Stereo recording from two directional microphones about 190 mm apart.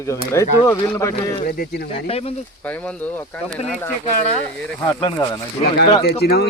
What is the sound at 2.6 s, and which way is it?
Speech, 10° left (ahead or behind).